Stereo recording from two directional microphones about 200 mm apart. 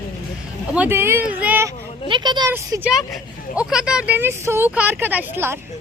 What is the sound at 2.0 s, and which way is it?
A woman's voice, 25° right (ahead or behind).